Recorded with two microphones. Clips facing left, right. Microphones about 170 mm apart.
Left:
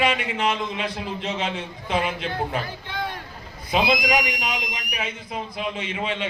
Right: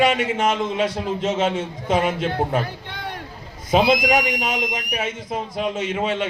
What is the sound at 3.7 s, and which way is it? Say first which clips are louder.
A man's voice: right 5 dB; 45° right (ahead or behind).